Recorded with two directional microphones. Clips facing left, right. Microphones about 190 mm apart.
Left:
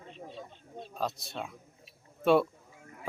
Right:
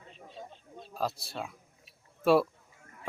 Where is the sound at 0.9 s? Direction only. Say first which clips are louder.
Right 1 dB; centre (ahead or behind).